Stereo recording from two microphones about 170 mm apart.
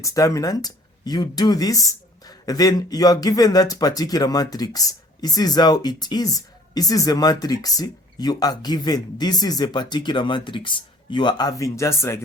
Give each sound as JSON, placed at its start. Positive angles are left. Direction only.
{"t": 0.0, "sound": "speech", "side_deg": 20}